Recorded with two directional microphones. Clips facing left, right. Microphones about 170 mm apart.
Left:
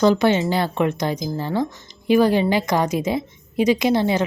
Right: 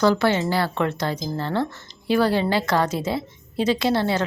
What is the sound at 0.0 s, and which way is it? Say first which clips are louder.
A woman's voice: left 3 dB; 20° left (ahead or behind).